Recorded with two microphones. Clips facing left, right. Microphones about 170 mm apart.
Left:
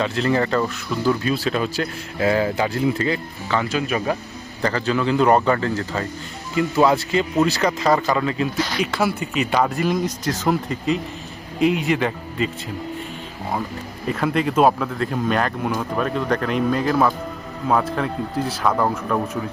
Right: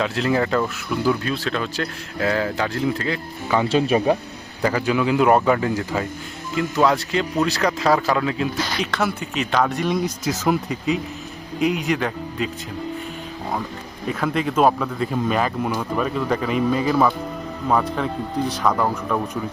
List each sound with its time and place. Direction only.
0.0 s speech: centre (ahead or behind)
1.1 s speech: 5° left (ahead or behind)
3.7 s speech: 30° right (ahead or behind)
4.6 s a man's voice: 10° right (ahead or behind)
6.6 s speech: 5° left (ahead or behind)
14.1 s speech: centre (ahead or behind)